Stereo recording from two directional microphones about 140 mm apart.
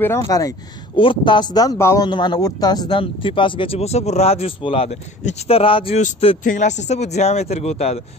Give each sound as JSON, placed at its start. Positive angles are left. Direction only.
{"t": 0.0, "sound": "speech", "side_deg": 20}
{"t": 0.9, "sound": "speech", "side_deg": 35}
{"t": 5.9, "sound": "speech", "side_deg": 60}